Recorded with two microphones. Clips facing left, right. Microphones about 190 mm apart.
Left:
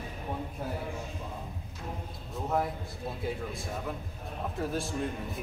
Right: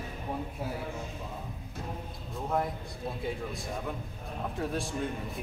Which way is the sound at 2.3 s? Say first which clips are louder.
Left 1 dB; centre (ahead or behind).